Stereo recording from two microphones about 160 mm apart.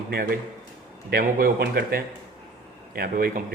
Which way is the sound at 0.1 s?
75° right (ahead or behind).